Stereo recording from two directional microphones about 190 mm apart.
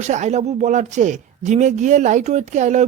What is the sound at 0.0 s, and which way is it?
Speech, 35° right (ahead or behind).